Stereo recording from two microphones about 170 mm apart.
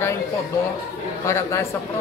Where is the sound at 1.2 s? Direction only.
15° left (ahead or behind).